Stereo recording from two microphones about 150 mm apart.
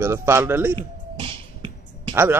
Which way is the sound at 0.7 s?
35° right (ahead or behind).